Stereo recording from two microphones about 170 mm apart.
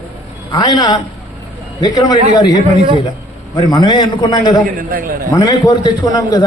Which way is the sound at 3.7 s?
25° left (ahead or behind).